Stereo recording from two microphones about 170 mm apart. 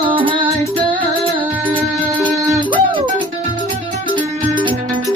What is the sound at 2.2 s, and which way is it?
Music, 10° left (ahead or behind).